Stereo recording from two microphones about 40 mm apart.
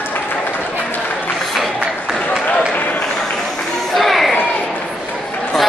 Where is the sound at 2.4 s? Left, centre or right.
Left.